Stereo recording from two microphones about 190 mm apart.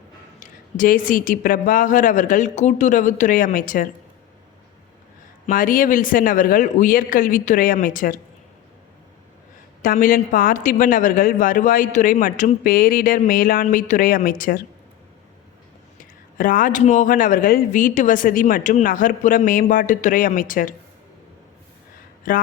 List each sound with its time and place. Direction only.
0.3 s speech: 45° left (ahead or behind)
5.5 s speech: 50° left (ahead or behind)
9.8 s speech: 45° left (ahead or behind)
16.0 s speech: 45° left (ahead or behind)
22.3 s speech: 45° left (ahead or behind)